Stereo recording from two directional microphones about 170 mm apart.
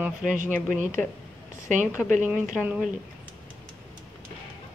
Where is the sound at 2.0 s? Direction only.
5° left (ahead or behind).